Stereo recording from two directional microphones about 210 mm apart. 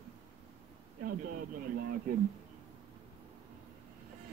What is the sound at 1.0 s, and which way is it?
Speech, 40° right (ahead or behind).